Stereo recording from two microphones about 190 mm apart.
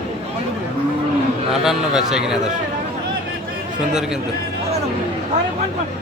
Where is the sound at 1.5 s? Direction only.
Centre (ahead or behind).